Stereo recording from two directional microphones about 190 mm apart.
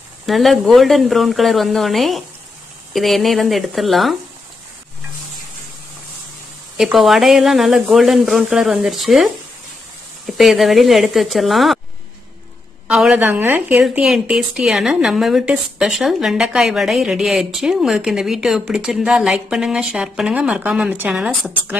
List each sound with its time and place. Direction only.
0.3 s a woman's voice: centre (ahead or behind)
6.8 s a woman's voice: centre (ahead or behind)
12.8 s a woman's voice: 5° right (ahead or behind)